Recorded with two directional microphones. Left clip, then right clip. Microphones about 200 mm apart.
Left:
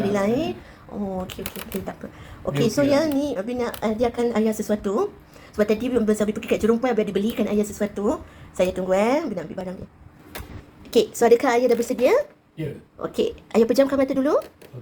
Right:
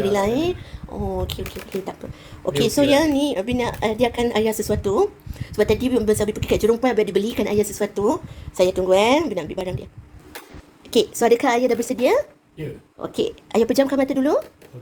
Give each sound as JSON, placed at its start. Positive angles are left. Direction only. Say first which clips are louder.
{"t": 0.0, "sound": "a woman's voice", "louder": "right 3 dB", "side_deg": -30}
{"t": 2.5, "sound": "a woman's voice", "louder": "right 3 dB", "side_deg": -30}
{"t": 11.2, "sound": "a woman's voice", "louder": "left 1 dB", "side_deg": -25}